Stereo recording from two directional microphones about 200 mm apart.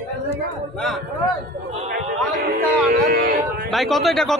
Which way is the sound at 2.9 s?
45° right (ahead or behind).